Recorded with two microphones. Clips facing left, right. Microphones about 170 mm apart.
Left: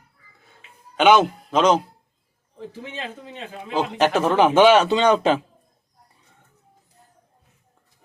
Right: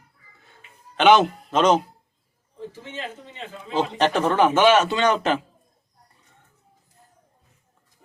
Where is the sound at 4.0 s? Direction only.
5° left (ahead or behind).